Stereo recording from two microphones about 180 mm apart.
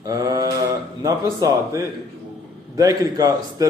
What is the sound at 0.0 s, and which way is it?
Mantra, 20° right (ahead or behind).